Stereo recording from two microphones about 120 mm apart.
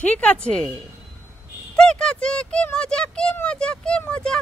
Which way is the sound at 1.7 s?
5° left (ahead or behind).